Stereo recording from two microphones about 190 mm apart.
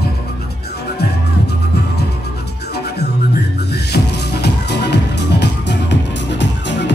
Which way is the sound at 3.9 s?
60° left (ahead or behind).